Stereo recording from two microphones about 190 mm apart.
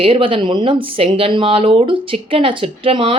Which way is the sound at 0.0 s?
30° right (ahead or behind).